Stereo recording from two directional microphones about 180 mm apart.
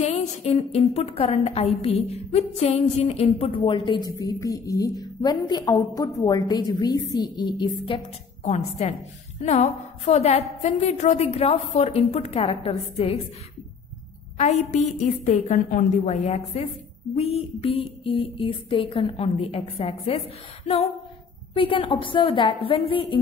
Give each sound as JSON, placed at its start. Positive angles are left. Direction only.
{"t": 0.0, "sound": "a woman's voice", "side_deg": 35}
{"t": 14.4, "sound": "a woman's voice", "side_deg": 40}
{"t": 21.5, "sound": "a woman's voice", "side_deg": 30}